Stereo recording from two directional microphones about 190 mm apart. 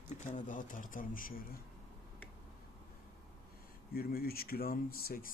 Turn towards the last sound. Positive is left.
turn(degrees=50)  # may be behind; listen again after turning